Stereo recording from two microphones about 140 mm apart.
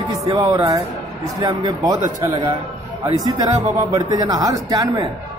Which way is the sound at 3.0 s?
30° right (ahead or behind).